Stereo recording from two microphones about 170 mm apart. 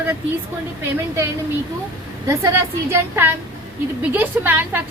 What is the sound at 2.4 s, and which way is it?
A woman's voice, 15° right (ahead or behind).